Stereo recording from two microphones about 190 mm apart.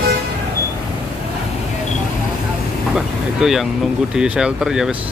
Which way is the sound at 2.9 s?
Centre (ahead or behind).